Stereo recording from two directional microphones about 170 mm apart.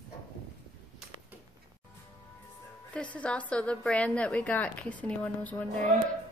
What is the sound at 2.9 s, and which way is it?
A woman's voice, 5° left (ahead or behind).